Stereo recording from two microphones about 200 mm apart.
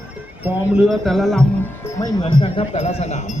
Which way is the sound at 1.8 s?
15° left (ahead or behind).